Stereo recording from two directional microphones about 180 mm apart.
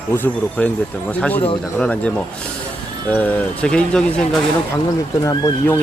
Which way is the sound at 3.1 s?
10° left (ahead or behind).